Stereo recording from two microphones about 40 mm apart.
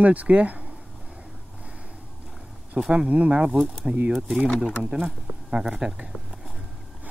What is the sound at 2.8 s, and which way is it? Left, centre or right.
Speech, right.